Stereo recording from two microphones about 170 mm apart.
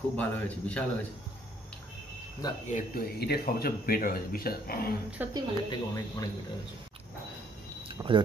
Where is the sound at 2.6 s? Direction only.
55° left (ahead or behind).